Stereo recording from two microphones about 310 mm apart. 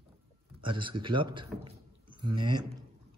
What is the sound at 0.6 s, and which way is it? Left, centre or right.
Speech, centre.